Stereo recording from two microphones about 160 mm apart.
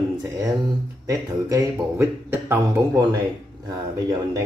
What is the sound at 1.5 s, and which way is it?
Speech, 15° right (ahead or behind).